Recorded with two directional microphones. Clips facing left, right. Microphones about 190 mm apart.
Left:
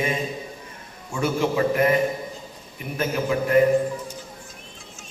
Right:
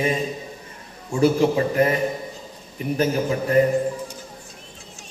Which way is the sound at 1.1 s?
35° right (ahead or behind).